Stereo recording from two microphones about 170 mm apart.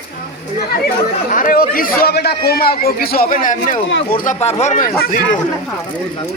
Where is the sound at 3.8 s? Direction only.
90° left.